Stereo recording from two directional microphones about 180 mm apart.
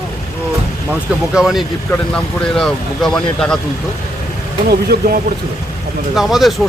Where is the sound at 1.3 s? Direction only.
Centre (ahead or behind).